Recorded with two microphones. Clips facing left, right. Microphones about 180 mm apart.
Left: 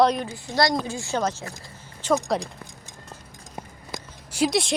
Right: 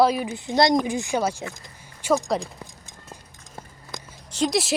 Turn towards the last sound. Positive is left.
turn(degrees=10)  # may be behind; listen again after turning